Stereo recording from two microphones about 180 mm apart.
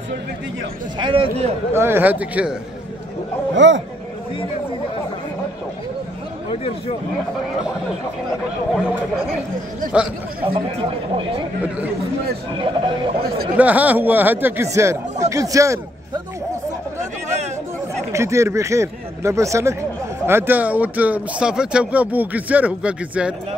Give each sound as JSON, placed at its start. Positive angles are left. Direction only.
{"t": 0.9, "sound": "a man's voice", "side_deg": -30}
{"t": 1.7, "sound": "speech", "side_deg": -15}
{"t": 3.5, "sound": "speech", "side_deg": -90}
{"t": 10.4, "sound": "speech", "side_deg": -30}
{"t": 12.5, "sound": "a man's voice", "side_deg": -25}
{"t": 13.6, "sound": "speech", "side_deg": -10}
{"t": 18.1, "sound": "speech", "side_deg": -15}